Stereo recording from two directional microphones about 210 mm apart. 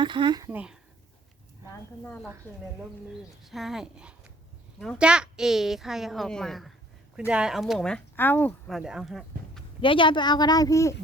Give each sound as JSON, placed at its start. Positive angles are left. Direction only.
{"t": 0.0, "sound": "speech", "side_deg": -20}
{"t": 3.1, "sound": "a woman's voice", "side_deg": 0}
{"t": 9.8, "sound": "a woman's voice", "side_deg": 25}